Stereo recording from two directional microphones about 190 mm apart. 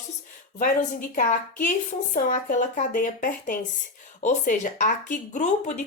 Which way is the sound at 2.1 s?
40° left (ahead or behind).